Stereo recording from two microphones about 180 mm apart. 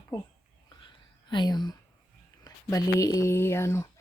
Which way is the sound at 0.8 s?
25° left (ahead or behind).